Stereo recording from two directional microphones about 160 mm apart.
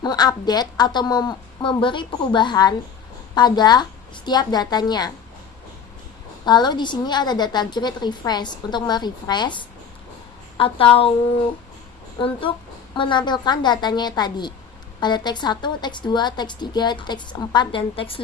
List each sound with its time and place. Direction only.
0.0 s a woman's voice: 25° left (ahead or behind)
6.4 s a woman's voice: 25° left (ahead or behind)
12.2 s a woman's voice: 35° left (ahead or behind)